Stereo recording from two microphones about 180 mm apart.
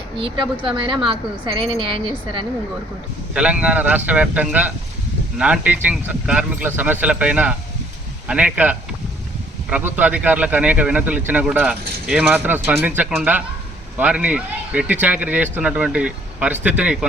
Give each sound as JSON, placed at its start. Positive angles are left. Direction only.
{"t": 0.6, "sound": "speech", "side_deg": -25}
{"t": 3.3, "sound": "speech", "side_deg": -5}